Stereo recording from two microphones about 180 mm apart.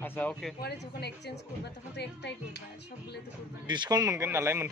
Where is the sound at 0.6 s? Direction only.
65° left (ahead or behind).